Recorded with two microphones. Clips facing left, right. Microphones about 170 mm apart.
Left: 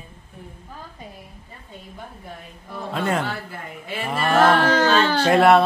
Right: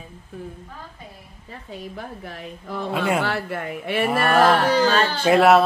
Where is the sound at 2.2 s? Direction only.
90° right.